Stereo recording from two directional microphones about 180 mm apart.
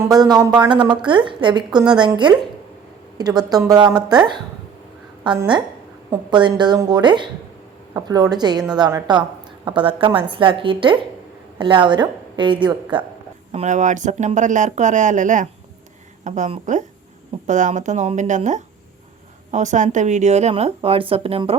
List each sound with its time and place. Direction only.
0.0 s a woman's voice: 20° right (ahead or behind)
5.2 s a woman's voice: 25° right (ahead or behind)
13.5 s speech: 40° right (ahead or behind)